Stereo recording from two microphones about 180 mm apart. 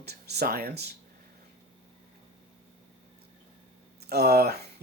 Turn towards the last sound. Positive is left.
turn(degrees=-60)  # may be behind; listen again after turning